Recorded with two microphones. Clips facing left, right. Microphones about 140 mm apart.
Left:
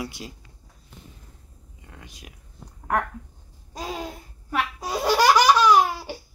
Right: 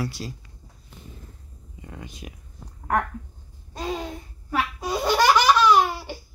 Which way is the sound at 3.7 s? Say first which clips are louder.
Right 3 dB; 5° left (ahead or behind).